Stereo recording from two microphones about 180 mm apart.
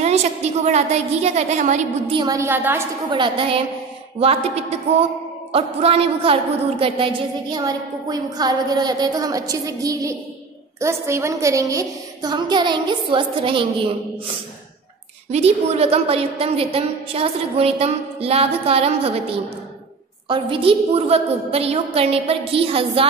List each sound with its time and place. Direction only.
0.0 s a woman's voice: 40° right (ahead or behind)
2.1 s a woman's voice: 20° right (ahead or behind)
3.1 s a woman's voice: 30° right (ahead or behind)
15.3 s a woman's voice: 35° right (ahead or behind)
20.2 s a woman's voice: 30° right (ahead or behind)